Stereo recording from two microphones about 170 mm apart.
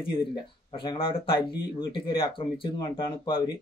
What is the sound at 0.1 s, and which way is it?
A man's voice, 30° left (ahead or behind).